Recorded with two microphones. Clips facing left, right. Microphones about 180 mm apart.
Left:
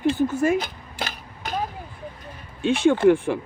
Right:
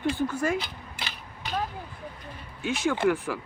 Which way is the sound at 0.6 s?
45° left (ahead or behind).